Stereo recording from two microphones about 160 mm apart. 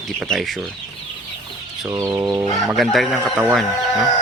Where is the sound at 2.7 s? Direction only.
Centre (ahead or behind).